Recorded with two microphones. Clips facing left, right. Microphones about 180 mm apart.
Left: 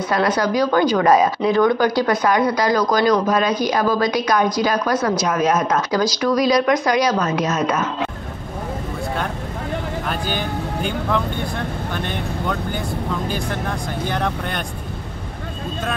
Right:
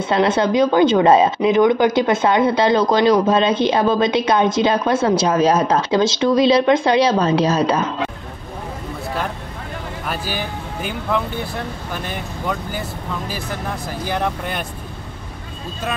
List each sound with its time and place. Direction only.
0.1 s a woman's voice: 25° right (ahead or behind)
10.0 s speech: 5° right (ahead or behind)